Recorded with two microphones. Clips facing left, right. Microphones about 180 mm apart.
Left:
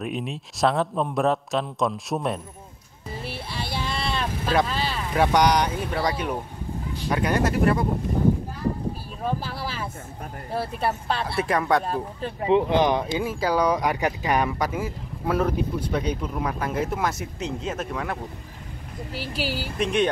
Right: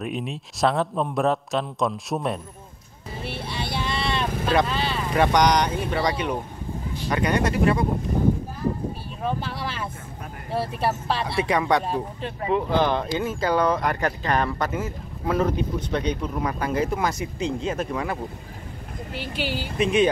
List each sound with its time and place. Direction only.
0.0 s speech: centre (ahead or behind)
3.3 s vehicle: 5° left (ahead or behind)
7.1 s speech: 5° left (ahead or behind)
9.2 s speech: 5° left (ahead or behind)
12.4 s a man's voice: 20° left (ahead or behind); by 20.1 s centre (ahead or behind)